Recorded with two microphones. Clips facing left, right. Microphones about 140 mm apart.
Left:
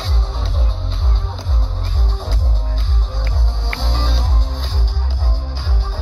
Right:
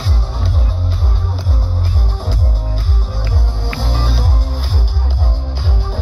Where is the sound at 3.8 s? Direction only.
5° right (ahead or behind).